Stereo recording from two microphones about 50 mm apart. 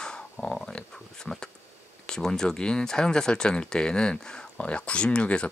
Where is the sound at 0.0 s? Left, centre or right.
Centre.